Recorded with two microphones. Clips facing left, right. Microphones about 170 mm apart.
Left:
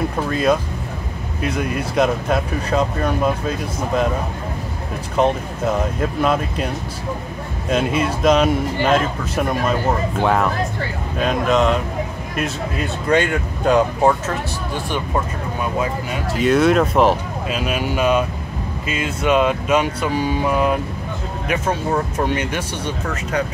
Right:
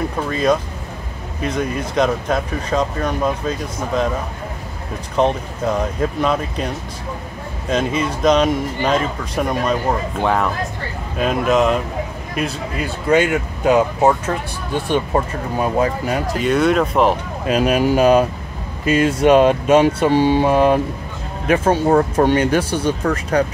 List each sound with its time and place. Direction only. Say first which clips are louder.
0.3 s speech: right 1 dB; 5° left (ahead or behind)
5.2 s speech: even; 5° left (ahead or behind)
7.7 s speech: even; 5° left (ahead or behind)
15.6 s speech: right 5 dB; 45° right (ahead or behind)
16.3 s speech: left 2 dB; centre (ahead or behind)
17.5 s speech: right 8 dB; 45° right (ahead or behind)